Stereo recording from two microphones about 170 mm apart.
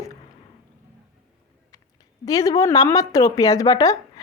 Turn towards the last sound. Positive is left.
turn(degrees=20)  # may be behind; listen again after turning